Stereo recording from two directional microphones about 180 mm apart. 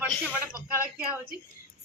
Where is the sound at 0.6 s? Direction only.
10° right (ahead or behind).